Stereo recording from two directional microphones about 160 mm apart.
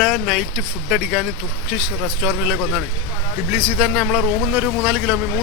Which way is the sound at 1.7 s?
15° right (ahead or behind).